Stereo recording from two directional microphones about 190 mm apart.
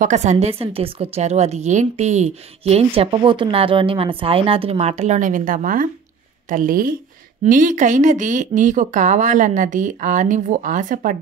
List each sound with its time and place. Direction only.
0.0 s a woman's voice: 40° right (ahead or behind)